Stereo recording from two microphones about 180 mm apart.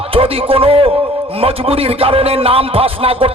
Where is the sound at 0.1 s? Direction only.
30° right (ahead or behind).